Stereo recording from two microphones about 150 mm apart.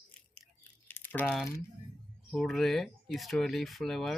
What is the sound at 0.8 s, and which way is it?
Crumpling, 15° left (ahead or behind).